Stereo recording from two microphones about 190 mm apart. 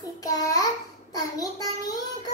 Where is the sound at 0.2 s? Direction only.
20° left (ahead or behind).